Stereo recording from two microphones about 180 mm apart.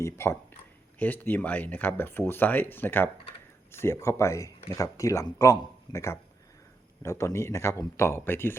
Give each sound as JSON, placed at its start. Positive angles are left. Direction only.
{"t": 0.0, "sound": "speech", "side_deg": 15}